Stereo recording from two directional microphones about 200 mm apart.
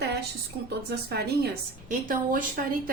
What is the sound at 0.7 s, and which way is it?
Speech, 55° right (ahead or behind).